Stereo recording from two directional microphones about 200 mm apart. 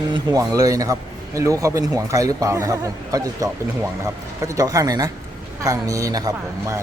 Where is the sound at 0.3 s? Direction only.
15° right (ahead or behind).